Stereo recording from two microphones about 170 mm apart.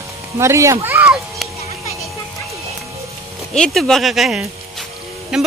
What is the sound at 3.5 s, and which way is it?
Speech, 5° left (ahead or behind).